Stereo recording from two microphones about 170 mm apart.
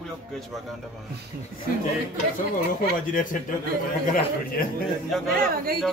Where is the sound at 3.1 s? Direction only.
50° left (ahead or behind).